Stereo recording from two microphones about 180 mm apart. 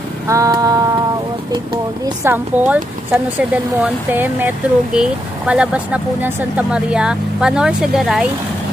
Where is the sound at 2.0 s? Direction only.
15° right (ahead or behind).